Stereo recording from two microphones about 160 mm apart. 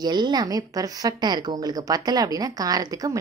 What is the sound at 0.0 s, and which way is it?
A woman's voice, 25° right (ahead or behind).